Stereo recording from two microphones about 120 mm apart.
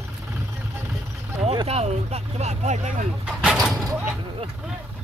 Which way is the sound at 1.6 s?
60° right (ahead or behind).